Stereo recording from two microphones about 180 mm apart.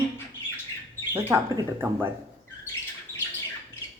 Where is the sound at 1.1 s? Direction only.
15° right (ahead or behind).